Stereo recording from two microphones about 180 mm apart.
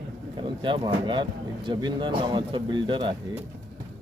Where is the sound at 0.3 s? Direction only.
25° right (ahead or behind).